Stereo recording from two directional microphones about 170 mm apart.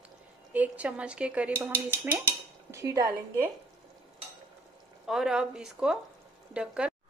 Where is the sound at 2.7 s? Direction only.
20° right (ahead or behind).